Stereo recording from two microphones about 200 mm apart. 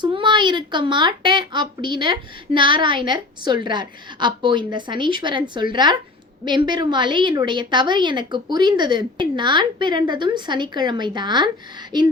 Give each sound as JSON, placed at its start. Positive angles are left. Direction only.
{"t": 0.0, "sound": "a woman's voice", "side_deg": -25}